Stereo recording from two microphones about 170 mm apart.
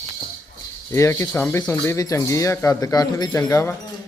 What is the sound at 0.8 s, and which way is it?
Speech, 15° left (ahead or behind).